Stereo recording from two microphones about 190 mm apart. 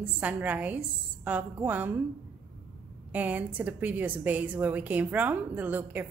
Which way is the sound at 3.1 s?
10° right (ahead or behind).